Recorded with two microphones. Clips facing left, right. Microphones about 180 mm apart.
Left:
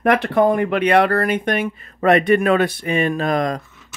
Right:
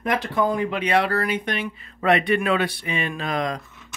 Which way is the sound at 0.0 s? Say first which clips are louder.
Left 7 dB; 60° left (ahead or behind).